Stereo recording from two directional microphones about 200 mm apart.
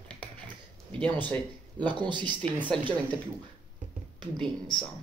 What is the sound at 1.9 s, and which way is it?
Speech, 25° right (ahead or behind).